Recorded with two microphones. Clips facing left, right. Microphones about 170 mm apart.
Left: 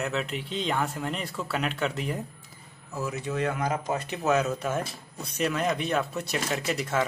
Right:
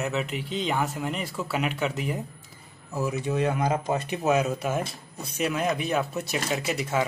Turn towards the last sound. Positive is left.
turn(degrees=-5)  # may be behind; listen again after turning